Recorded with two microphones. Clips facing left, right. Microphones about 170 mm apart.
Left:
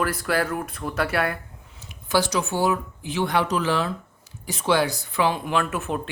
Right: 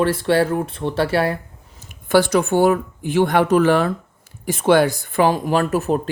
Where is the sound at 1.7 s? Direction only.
50° right (ahead or behind).